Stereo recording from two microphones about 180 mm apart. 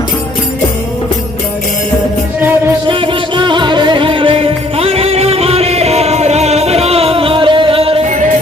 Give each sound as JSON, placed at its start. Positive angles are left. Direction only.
{"t": 2.8, "sound": "music", "side_deg": -30}